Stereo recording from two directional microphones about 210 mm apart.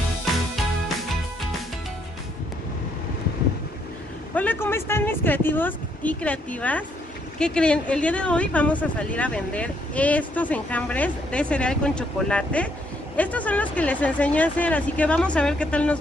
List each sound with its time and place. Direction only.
4.4 s speech: 10° left (ahead or behind)